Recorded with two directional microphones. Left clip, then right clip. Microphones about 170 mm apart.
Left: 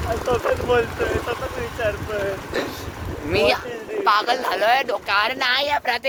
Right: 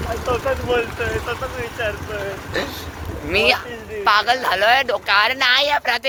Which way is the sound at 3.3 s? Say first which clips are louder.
Right 2 dB; 5° left (ahead or behind).